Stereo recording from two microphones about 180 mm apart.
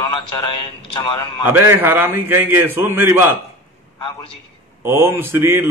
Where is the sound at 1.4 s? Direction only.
10° right (ahead or behind).